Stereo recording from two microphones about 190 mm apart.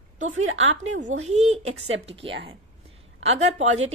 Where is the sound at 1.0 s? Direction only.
35° right (ahead or behind).